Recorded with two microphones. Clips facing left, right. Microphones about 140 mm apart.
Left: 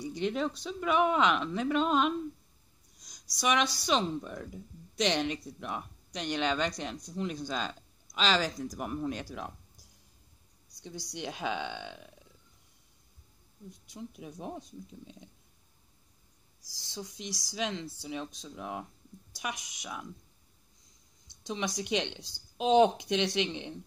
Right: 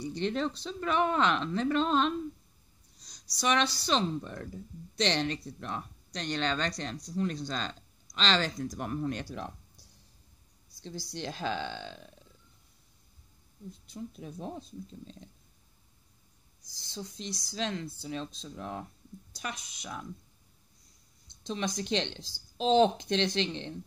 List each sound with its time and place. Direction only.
0.1 s a woman's voice: 10° left (ahead or behind)
3.4 s a woman's voice: 10° left (ahead or behind)
11.1 s a woman's voice: 15° left (ahead or behind)
13.7 s a woman's voice: 15° left (ahead or behind)
17.3 s speech: 90° left
17.6 s a woman's voice: 15° left (ahead or behind)
21.5 s a woman's voice: 15° left (ahead or behind)